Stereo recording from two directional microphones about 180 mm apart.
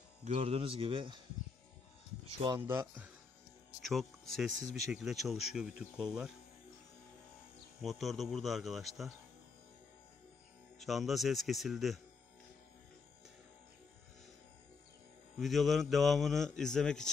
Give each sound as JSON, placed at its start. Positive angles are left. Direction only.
{"t": 0.2, "sound": "speech", "side_deg": -35}
{"t": 2.4, "sound": "speech", "side_deg": -15}
{"t": 3.8, "sound": "speech", "side_deg": 0}
{"t": 7.8, "sound": "speech", "side_deg": 0}
{"t": 10.8, "sound": "speech", "side_deg": 0}
{"t": 15.3, "sound": "speech", "side_deg": 0}